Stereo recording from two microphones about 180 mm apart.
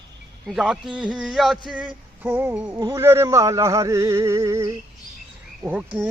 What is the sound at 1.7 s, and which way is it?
Music, 5° right (ahead or behind).